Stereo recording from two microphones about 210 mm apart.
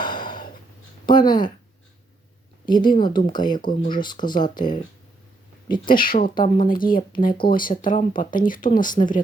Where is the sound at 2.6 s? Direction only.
20° left (ahead or behind).